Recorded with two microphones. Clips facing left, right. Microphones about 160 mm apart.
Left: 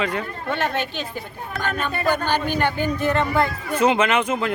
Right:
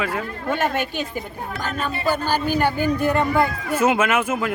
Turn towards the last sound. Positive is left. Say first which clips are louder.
# even
turn(degrees=-5)  # may be behind; listen again after turning